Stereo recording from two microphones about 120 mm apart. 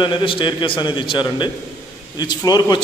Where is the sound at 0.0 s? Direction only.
45° left (ahead or behind).